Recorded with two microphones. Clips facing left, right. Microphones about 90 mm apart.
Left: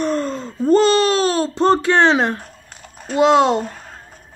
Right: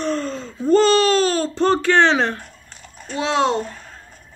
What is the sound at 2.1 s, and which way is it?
Speech, 10° left (ahead or behind).